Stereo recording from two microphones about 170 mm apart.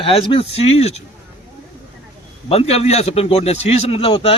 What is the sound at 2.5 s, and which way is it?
A man's voice, 35° left (ahead or behind).